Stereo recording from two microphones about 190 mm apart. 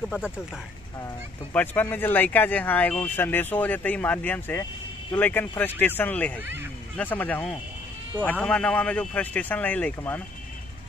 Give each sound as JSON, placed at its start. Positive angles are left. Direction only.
{"t": 1.0, "sound": "speech", "side_deg": 10}